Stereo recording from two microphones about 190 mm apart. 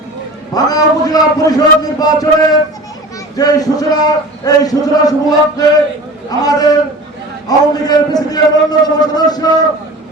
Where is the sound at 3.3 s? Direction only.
20° left (ahead or behind).